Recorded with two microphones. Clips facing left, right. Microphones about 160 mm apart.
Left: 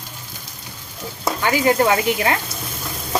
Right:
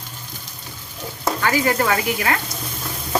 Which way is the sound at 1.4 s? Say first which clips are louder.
Left 3 dB; 20° left (ahead or behind).